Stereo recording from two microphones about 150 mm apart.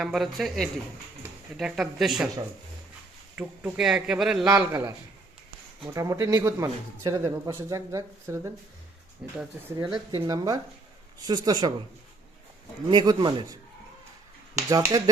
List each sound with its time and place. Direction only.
0.0 s speech: centre (ahead or behind)
3.3 s speech: 10° right (ahead or behind)
4.4 s speech: 20° right (ahead or behind)
9.2 s speech: 5° right (ahead or behind)
9.7 s speech: 25° right (ahead or behind)
12.9 s speech: 30° right (ahead or behind)